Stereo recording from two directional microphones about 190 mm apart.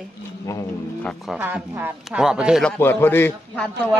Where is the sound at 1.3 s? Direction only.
10° right (ahead or behind).